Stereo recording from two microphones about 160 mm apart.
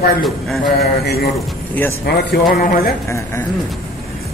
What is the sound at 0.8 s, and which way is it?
Speech, 80° left.